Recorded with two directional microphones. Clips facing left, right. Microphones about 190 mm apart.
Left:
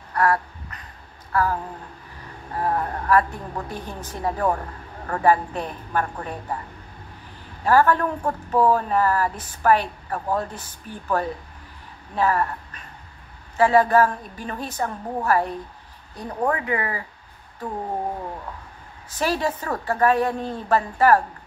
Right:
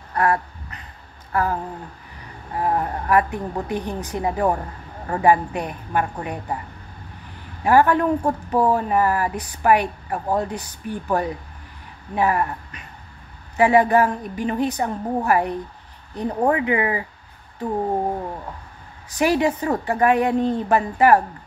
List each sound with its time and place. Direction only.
0.1 s a sound: 20° right (ahead or behind)
1.3 s speech: 20° right (ahead or behind)
2.6 s speech: 15° right (ahead or behind)
7.6 s speech: 15° right (ahead or behind)
19.0 s speech: 15° right (ahead or behind)